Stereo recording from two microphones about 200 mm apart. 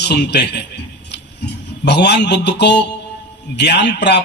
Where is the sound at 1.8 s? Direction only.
55° left (ahead or behind).